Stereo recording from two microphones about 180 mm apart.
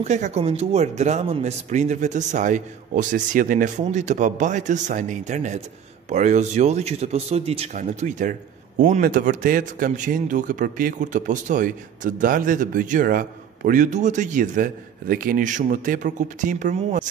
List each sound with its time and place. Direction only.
0.0 s speech: 40° right (ahead or behind)